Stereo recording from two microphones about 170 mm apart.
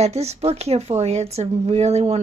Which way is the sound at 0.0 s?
40° right (ahead or behind).